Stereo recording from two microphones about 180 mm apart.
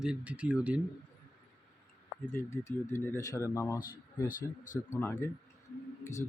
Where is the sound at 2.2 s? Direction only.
15° left (ahead or behind).